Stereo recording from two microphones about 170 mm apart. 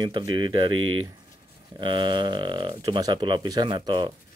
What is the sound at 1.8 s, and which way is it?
Speech, 25° right (ahead or behind).